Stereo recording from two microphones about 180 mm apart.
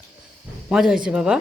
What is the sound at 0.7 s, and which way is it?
Speech, centre (ahead or behind).